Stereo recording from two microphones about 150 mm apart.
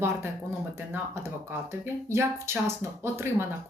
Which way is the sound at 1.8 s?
15° right (ahead or behind).